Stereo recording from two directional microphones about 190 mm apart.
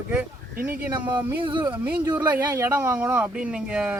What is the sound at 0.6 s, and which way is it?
Speech, 25° right (ahead or behind).